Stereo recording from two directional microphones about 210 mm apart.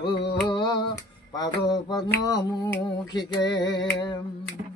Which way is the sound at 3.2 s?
20° left (ahead or behind).